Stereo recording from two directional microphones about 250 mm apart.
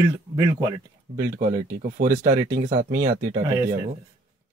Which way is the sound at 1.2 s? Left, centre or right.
Right.